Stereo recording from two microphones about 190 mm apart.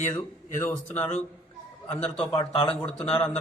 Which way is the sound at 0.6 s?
5° left (ahead or behind).